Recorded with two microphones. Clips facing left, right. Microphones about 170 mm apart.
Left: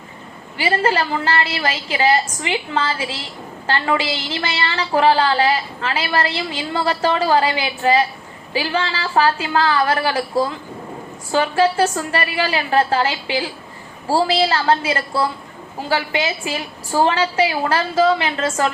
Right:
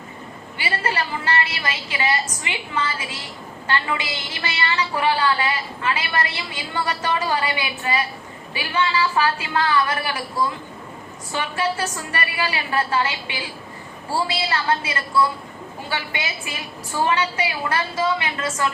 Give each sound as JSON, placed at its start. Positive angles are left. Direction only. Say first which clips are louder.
{"t": 0.6, "sound": "a woman's voice", "louder": "left 7 dB", "side_deg": 30}
{"t": 11.3, "sound": "a woman's voice", "louder": "left 8 dB", "side_deg": 35}